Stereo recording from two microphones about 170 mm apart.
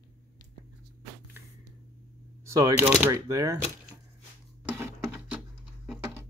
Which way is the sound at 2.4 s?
20° right (ahead or behind).